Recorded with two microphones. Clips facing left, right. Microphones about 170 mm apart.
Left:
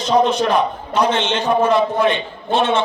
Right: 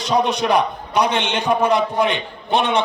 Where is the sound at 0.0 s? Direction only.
15° right (ahead or behind).